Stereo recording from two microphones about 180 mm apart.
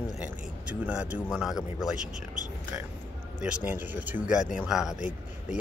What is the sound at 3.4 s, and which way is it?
Speech, 5° right (ahead or behind).